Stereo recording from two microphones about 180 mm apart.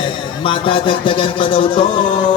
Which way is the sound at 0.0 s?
30° left (ahead or behind).